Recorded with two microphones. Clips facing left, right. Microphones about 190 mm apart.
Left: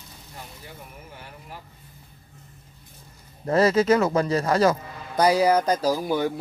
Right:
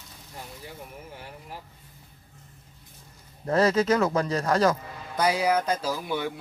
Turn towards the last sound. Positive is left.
turn(degrees=40)  # may be behind; listen again after turning